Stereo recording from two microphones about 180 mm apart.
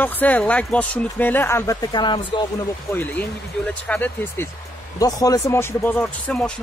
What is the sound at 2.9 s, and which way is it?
Speech, 10° left (ahead or behind).